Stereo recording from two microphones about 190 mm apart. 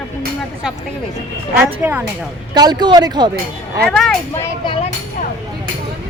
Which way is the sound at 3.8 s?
Centre (ahead or behind).